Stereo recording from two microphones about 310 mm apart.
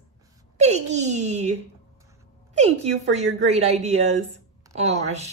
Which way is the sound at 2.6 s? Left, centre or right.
Right.